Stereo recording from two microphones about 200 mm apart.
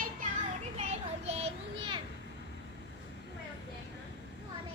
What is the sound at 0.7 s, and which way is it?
Children playing, 30° right (ahead or behind).